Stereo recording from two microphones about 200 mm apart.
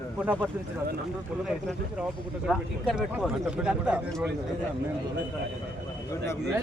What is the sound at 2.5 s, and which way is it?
Speech, centre (ahead or behind).